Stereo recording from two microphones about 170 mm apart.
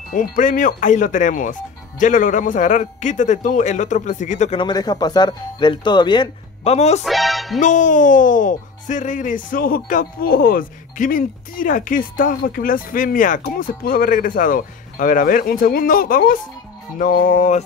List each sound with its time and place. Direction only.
0.1 s speech: 50° left (ahead or behind)
4.6 s speech: 25° left (ahead or behind)
6.6 s a man's voice: 40° left (ahead or behind)
7.0 s speech: centre (ahead or behind)
7.6 s speech: 50° left (ahead or behind)